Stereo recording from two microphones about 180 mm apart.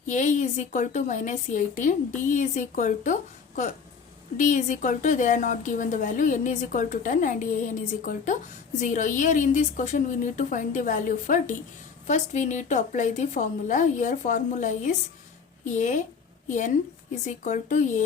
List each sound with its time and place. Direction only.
0.0 s a woman's voice: 45° left (ahead or behind)